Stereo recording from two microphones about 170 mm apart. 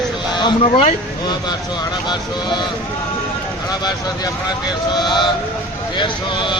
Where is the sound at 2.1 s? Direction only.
25° left (ahead or behind).